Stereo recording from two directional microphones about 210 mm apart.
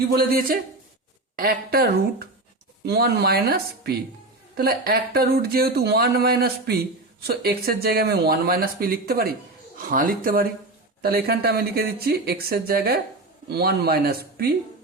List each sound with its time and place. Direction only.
0.2 s speech: 45° right (ahead or behind)